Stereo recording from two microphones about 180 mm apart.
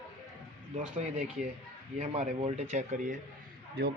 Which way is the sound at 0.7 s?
45° right (ahead or behind).